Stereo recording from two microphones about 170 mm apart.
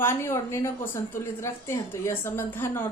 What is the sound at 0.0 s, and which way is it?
A woman's voice, 15° left (ahead or behind).